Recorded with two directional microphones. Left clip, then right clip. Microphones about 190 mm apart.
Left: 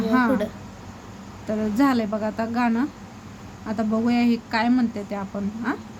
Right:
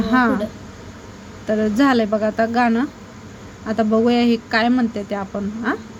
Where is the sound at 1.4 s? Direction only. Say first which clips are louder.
Right 5 dB; 15° right (ahead or behind).